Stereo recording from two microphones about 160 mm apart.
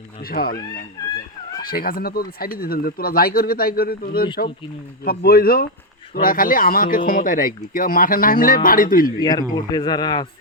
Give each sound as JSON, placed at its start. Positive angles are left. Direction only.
{"t": 0.2, "sound": "speech", "side_deg": 70}
{"t": 1.6, "sound": "speech", "side_deg": 65}
{"t": 9.6, "sound": "speech", "side_deg": 25}